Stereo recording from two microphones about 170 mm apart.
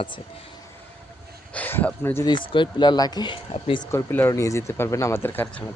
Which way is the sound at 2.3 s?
30° left (ahead or behind).